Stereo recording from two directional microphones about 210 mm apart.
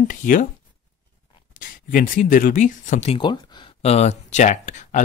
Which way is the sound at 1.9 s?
40° left (ahead or behind).